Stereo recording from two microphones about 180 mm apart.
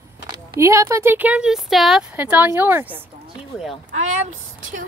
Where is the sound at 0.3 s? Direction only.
15° right (ahead or behind).